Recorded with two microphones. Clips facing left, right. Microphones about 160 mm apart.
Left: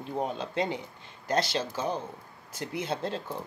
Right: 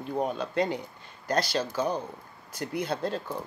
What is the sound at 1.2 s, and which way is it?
Speech, 25° left (ahead or behind).